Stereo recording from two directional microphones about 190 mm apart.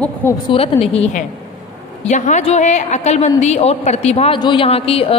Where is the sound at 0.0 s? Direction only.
10° left (ahead or behind).